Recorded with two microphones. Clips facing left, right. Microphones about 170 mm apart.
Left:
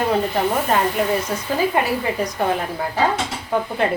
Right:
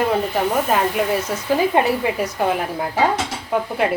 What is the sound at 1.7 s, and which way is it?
Speech, 20° right (ahead or behind).